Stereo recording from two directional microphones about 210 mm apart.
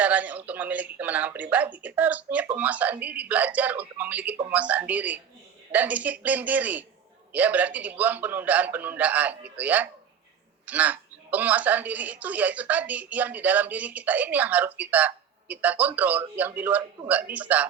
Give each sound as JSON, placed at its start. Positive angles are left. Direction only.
{"t": 0.0, "sound": "a woman's voice", "side_deg": -5}